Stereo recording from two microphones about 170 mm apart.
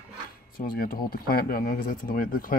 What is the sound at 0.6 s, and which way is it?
Speech, 55° left (ahead or behind).